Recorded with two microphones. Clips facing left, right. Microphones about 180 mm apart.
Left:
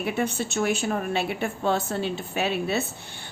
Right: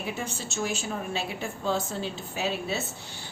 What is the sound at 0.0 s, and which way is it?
A woman's voice, 60° left (ahead or behind).